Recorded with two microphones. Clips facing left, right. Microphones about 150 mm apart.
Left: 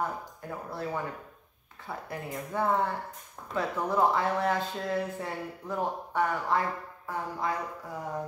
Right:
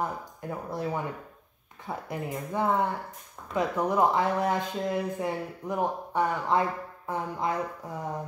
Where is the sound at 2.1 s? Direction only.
15° right (ahead or behind).